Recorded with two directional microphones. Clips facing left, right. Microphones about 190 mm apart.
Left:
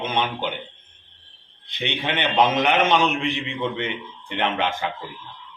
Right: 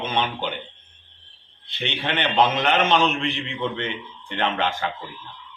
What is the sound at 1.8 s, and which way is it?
A man's voice, 15° left (ahead or behind).